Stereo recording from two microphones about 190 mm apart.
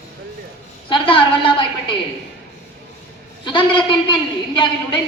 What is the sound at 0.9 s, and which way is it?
A woman's voice, 25° left (ahead or behind).